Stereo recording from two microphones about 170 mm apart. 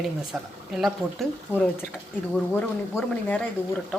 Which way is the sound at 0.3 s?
5° right (ahead or behind).